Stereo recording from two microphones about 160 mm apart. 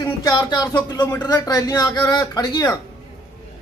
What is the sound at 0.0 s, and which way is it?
Speech, 20° left (ahead or behind).